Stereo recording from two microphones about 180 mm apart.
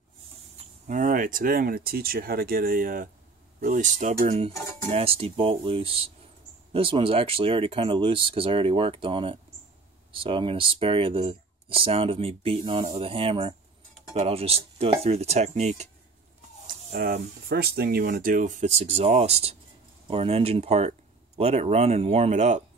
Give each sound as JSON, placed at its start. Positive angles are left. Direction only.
{"t": 0.6, "sound": "speech", "side_deg": -45}
{"t": 16.6, "sound": "speech", "side_deg": -60}